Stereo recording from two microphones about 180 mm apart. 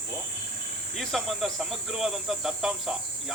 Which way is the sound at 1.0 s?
Centre (ahead or behind).